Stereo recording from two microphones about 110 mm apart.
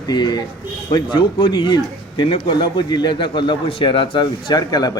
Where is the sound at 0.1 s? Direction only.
40° left (ahead or behind).